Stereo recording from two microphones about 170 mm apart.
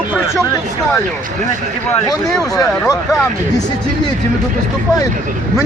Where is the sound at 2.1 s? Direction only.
20° left (ahead or behind).